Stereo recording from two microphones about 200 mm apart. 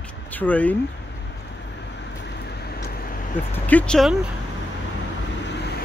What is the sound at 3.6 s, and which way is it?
Speech, 5° left (ahead or behind).